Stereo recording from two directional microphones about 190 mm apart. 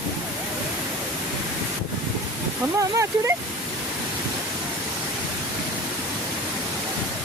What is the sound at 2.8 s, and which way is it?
Speech, 15° right (ahead or behind).